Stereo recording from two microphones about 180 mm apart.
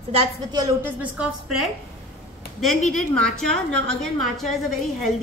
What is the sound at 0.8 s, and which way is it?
Speech, 10° right (ahead or behind).